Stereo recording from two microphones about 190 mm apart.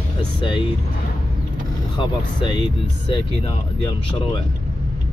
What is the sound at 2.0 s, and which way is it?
Speech, 25° left (ahead or behind).